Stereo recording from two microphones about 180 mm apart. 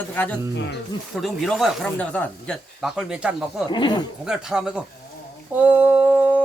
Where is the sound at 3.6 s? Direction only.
25° left (ahead or behind).